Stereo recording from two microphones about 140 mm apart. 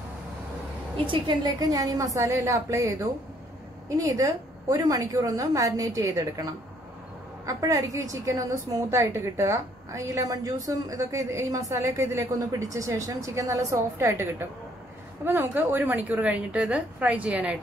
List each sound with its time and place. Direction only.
0.9 s a woman's voice: 40° right (ahead or behind)
7.4 s a woman's voice: 25° right (ahead or behind); by 17.6 s 10° right (ahead or behind)